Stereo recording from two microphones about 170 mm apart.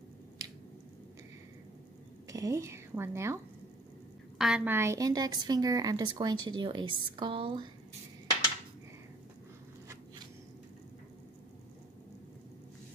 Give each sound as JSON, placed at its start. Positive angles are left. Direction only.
{"t": 2.2, "sound": "a woman's voice", "side_deg": -20}
{"t": 4.4, "sound": "a woman's voice", "side_deg": -5}